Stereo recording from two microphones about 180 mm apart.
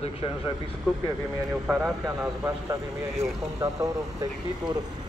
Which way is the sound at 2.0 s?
20° right (ahead or behind).